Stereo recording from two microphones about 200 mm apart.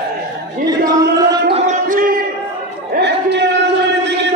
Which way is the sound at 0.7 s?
20° right (ahead or behind).